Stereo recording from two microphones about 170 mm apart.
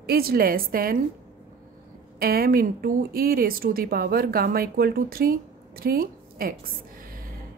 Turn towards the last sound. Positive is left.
turn(degrees=-60)  # may be behind; listen again after turning